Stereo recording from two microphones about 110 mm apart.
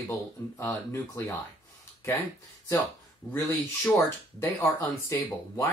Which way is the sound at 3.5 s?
25° left (ahead or behind).